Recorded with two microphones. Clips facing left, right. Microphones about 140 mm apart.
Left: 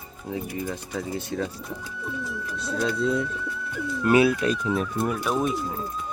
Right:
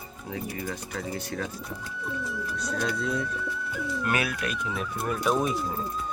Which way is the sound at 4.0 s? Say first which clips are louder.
Left 11 dB; 25° left (ahead or behind).